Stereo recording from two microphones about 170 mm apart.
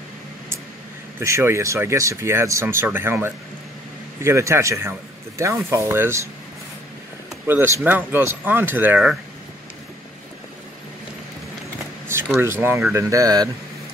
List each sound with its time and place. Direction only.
1.2 s speech: 15° right (ahead or behind)
7.4 s speech: 15° right (ahead or behind)
12.1 s speech: 15° right (ahead or behind)